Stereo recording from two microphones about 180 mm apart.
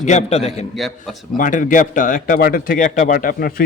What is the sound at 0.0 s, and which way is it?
Speech, 40° left (ahead or behind).